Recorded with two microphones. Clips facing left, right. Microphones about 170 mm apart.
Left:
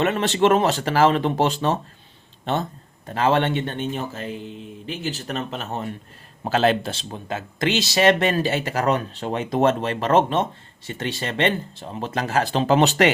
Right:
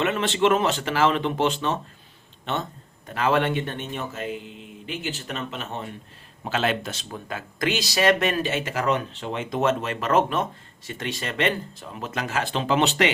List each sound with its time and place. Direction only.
0.0 s speech: 40° left (ahead or behind)